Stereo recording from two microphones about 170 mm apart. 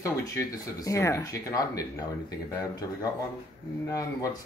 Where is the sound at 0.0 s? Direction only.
20° left (ahead or behind).